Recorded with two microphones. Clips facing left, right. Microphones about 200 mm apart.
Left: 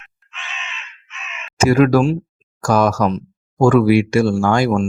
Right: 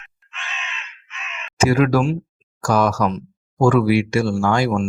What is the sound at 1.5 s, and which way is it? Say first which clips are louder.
Speech: left 4 dB; 45° left (ahead or behind).